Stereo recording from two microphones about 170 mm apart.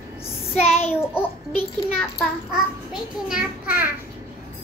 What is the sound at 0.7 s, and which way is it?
Child singing, 35° left (ahead or behind).